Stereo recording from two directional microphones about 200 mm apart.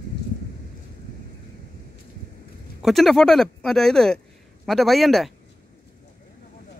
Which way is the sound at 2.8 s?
Centre (ahead or behind).